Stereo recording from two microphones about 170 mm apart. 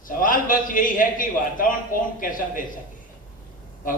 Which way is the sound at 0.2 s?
50° left (ahead or behind).